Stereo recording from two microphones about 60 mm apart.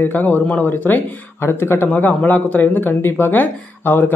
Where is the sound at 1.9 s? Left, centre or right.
Left.